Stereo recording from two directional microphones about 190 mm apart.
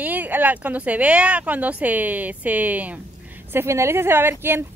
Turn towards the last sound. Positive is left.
turn(degrees=-10)  # may be behind; listen again after turning